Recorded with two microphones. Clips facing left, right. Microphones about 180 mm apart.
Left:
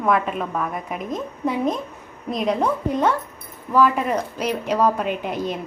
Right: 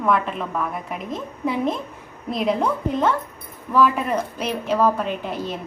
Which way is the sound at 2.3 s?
5° right (ahead or behind).